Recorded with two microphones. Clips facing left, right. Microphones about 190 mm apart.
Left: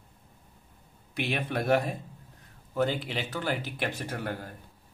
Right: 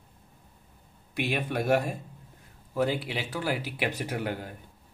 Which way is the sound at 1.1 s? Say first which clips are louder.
Right 1 dB; 5° right (ahead or behind).